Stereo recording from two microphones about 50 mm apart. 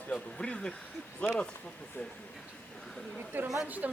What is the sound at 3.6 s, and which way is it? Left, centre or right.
Speech, right.